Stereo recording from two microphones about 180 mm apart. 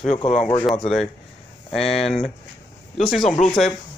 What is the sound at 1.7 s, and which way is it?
Speech, centre (ahead or behind).